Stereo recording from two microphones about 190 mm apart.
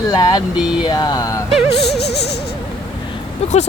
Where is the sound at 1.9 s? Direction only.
60° left (ahead or behind).